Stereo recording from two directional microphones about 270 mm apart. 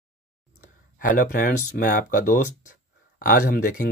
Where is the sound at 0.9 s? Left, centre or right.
Left.